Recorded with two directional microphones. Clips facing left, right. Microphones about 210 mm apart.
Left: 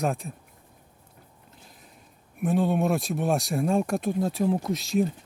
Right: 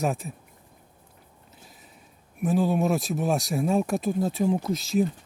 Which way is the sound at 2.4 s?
Centre (ahead or behind).